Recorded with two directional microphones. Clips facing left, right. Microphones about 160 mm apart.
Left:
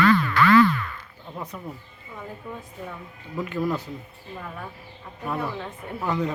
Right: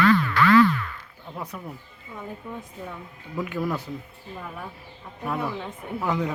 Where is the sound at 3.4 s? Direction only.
10° right (ahead or behind).